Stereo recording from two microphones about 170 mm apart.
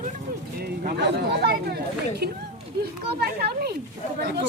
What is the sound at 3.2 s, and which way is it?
Speech, 70° right (ahead or behind).